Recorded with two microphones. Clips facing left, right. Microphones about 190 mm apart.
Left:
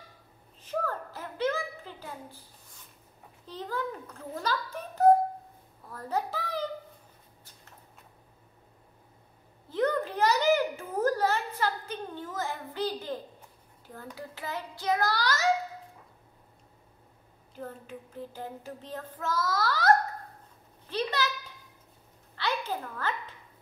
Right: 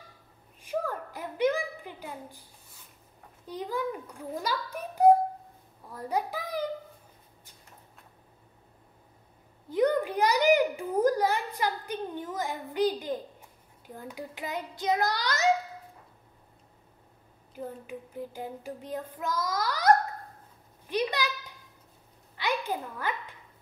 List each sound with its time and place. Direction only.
0.6 s a sound: 15° right (ahead or behind)
3.4 s child singing: 15° right (ahead or behind)
5.9 s a child's voice: 15° right (ahead or behind)
9.7 s a child's voice: 15° right (ahead or behind)
13.8 s child singing: 15° right (ahead or behind)
17.6 s child singing: 10° right (ahead or behind)
20.8 s a sound: 15° right (ahead or behind)
22.3 s a woman's voice: 15° right (ahead or behind)